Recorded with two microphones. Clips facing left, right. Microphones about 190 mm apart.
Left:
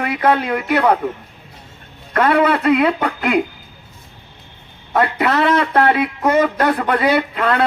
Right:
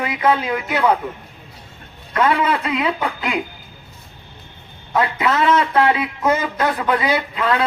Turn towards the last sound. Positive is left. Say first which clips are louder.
# left 2 dB
turn(degrees=55)  # may be behind; listen again after turning